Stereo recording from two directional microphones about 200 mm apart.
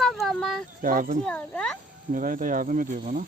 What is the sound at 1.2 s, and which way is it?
Speech, 5° left (ahead or behind).